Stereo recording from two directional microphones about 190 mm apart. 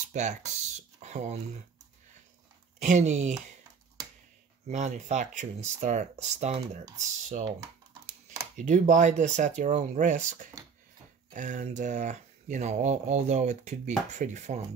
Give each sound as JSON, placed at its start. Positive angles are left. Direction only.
{"t": 0.1, "sound": "speech", "side_deg": -40}
{"t": 2.8, "sound": "speech", "side_deg": -40}
{"t": 4.6, "sound": "speech", "side_deg": -40}
{"t": 8.5, "sound": "speech", "side_deg": -40}